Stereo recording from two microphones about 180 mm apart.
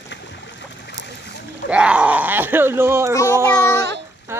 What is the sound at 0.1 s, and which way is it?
Boat, 75° left (ahead or behind).